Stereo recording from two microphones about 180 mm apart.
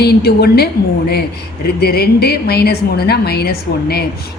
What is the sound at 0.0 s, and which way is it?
A woman's voice, 60° left (ahead or behind).